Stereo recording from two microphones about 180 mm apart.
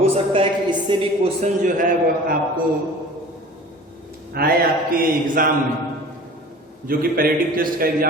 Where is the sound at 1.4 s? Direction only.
45° right (ahead or behind).